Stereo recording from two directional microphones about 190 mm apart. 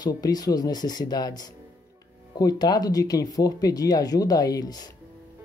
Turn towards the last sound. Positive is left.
turn(degrees=20)  # may be behind; listen again after turning